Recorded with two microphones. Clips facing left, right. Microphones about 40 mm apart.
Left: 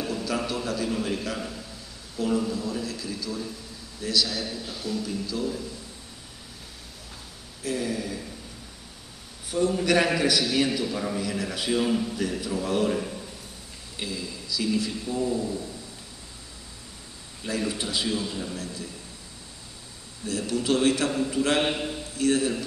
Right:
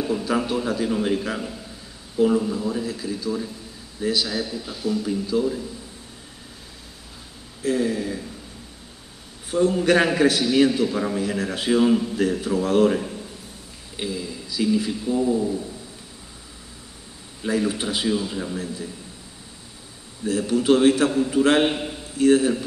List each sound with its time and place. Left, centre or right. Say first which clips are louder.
0.0 s a man's voice: right 5 dB; right
7.6 s a man's voice: right 6 dB; right
9.5 s a man's voice: right 5 dB; right
11.8 s a man's voice: right 6 dB; centre
12.2 s speech: right 6 dB; right
13.9 s a man's voice: right 5 dB; right
17.4 s a man's voice: right 6 dB; right
20.2 s a man's voice: right 7 dB; right
21.6 s a man's voice: right 3 dB; centre
22.1 s a man's voice: right 7 dB; right